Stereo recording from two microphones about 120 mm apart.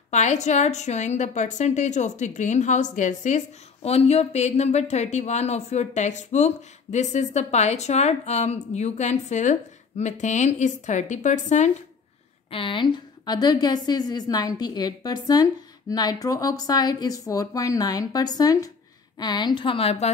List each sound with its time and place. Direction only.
0.1 s a woman's voice: 75° left (ahead or behind)
12.4 s a woman's voice: 50° left (ahead or behind)